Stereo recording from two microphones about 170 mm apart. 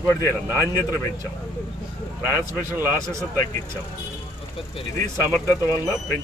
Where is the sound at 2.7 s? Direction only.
10° right (ahead or behind).